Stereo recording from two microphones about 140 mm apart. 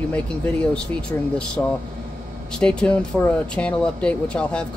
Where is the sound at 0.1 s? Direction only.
10° left (ahead or behind).